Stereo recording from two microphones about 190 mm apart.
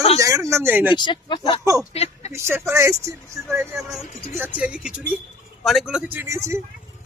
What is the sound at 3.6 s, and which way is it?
Speech, centre (ahead or behind).